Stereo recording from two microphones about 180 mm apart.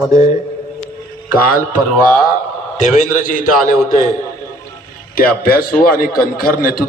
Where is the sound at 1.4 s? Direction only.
55° left (ahead or behind).